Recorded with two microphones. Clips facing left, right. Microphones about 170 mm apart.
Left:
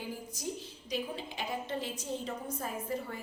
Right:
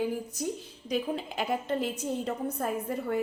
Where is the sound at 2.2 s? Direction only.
60° right (ahead or behind).